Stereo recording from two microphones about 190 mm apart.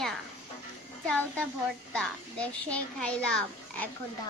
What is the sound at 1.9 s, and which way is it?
A child's voice, 5° left (ahead or behind).